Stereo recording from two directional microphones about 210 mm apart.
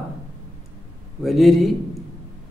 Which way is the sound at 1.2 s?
Centre (ahead or behind).